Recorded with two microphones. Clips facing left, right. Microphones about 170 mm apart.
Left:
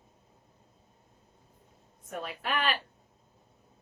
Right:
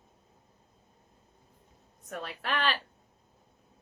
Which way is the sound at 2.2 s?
10° left (ahead or behind).